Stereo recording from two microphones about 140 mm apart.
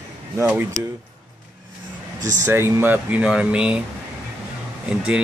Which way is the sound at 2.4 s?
15° right (ahead or behind).